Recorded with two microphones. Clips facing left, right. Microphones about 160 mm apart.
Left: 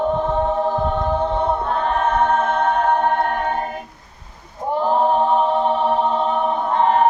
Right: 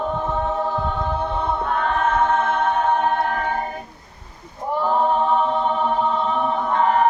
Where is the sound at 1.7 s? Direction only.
30° left (ahead or behind).